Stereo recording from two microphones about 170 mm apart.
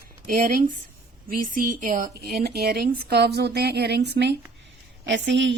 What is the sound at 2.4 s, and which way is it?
Speech, 65° right (ahead or behind).